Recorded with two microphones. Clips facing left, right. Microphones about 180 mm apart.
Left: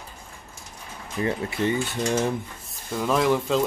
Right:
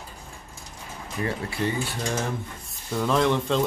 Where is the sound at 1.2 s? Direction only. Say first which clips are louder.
Left 3 dB; 20° left (ahead or behind).